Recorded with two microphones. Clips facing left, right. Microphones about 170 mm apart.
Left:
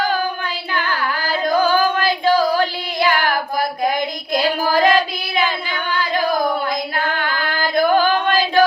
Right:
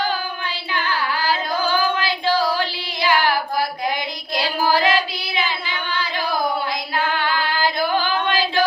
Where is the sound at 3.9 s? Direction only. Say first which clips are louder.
Left 5 dB; 45° left (ahead or behind).